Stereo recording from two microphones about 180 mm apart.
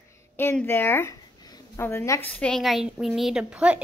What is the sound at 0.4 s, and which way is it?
Speech, 10° left (ahead or behind).